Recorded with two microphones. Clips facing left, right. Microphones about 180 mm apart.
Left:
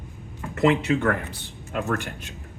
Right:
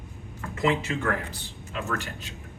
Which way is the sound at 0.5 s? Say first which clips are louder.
Left 6 dB; 65° left (ahead or behind).